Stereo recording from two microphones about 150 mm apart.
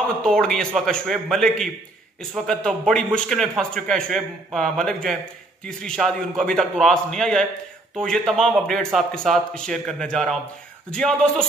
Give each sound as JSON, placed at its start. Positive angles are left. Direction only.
{"t": 0.2, "sound": "a man's voice", "side_deg": 5}